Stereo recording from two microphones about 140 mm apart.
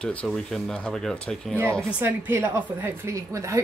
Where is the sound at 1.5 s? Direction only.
15° right (ahead or behind).